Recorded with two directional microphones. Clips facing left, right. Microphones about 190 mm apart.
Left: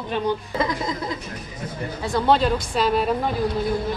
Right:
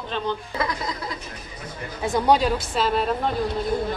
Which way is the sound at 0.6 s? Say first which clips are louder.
Left 2 dB; 20° left (ahead or behind).